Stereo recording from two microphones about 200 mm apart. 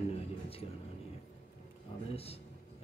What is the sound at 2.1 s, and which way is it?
Speech, 30° left (ahead or behind).